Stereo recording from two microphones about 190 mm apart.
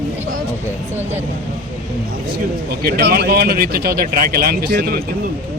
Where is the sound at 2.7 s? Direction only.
55° right (ahead or behind).